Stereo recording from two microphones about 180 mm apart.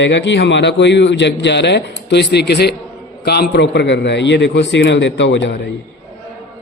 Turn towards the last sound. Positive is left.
turn(degrees=80)